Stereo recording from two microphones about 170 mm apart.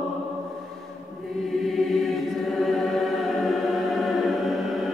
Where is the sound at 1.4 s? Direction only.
Centre (ahead or behind).